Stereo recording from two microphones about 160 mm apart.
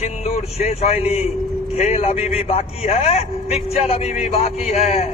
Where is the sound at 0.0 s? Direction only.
45° left (ahead or behind).